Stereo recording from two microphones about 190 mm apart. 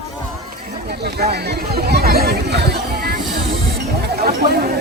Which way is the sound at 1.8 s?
55° right (ahead or behind).